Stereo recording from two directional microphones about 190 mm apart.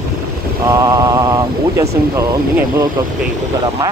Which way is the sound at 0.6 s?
15° right (ahead or behind).